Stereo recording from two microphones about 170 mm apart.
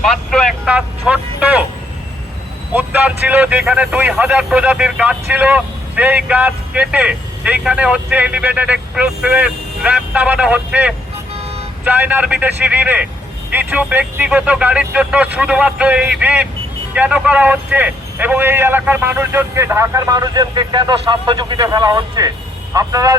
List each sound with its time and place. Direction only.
0.0 s speech: centre (ahead or behind)
2.7 s speech: 10° right (ahead or behind)